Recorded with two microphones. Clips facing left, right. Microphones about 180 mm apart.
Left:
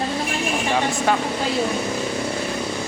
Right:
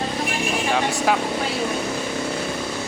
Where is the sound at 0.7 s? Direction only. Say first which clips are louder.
Even; centre (ahead or behind).